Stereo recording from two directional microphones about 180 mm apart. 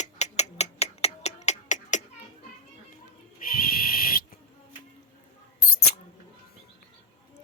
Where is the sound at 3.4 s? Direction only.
55° left (ahead or behind).